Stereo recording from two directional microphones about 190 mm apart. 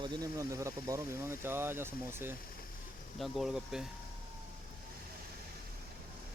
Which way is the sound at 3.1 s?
Centre (ahead or behind).